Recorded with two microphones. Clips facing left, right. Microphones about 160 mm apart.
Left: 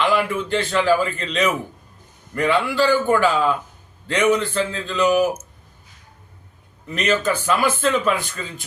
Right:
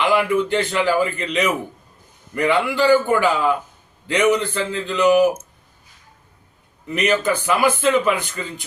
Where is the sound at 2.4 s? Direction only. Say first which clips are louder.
Right 2 dB; 15° right (ahead or behind).